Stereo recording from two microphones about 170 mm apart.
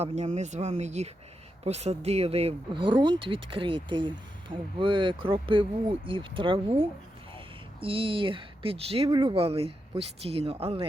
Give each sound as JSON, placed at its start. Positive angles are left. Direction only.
{"t": 0.0, "sound": "speech", "side_deg": -40}